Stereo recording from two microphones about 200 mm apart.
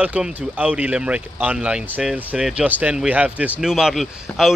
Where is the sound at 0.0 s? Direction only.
5° right (ahead or behind).